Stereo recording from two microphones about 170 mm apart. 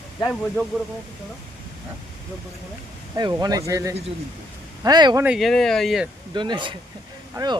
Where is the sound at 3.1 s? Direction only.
20° right (ahead or behind).